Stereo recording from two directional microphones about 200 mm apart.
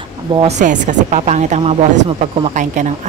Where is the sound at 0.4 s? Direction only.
35° right (ahead or behind).